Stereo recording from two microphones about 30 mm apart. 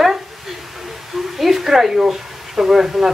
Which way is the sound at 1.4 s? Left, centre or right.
Centre.